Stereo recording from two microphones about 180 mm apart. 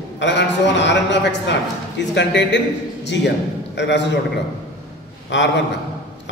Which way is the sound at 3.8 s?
75° left (ahead or behind).